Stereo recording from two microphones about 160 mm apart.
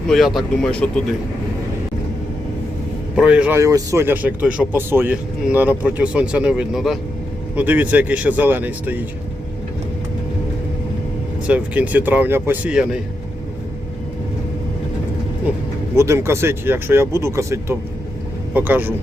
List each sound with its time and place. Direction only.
0.1 s speech: centre (ahead or behind)
3.2 s speech: 5° right (ahead or behind)
3.6 s speech: 20° right (ahead or behind)
11.4 s speech: 10° right (ahead or behind)
16.0 s speech: 15° right (ahead or behind)